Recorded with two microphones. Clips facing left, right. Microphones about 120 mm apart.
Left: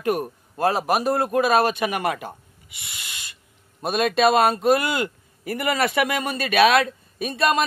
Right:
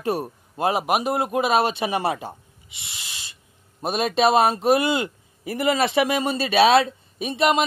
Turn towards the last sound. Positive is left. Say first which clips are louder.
# right 1 dB
turn(degrees=-20)  # may be behind; listen again after turning